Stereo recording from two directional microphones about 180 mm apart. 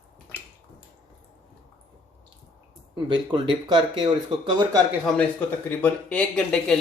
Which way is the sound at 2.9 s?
25° right (ahead or behind).